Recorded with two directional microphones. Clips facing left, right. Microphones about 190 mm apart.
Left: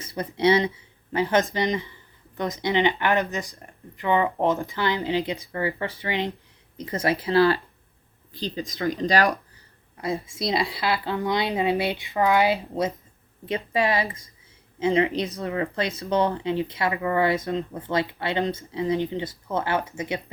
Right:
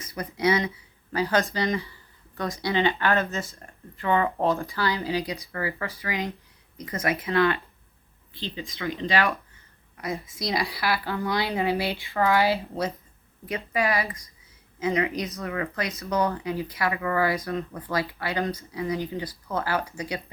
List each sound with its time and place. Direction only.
0.0 s speech: 30° left (ahead or behind)
10.0 s speech: 25° left (ahead or behind)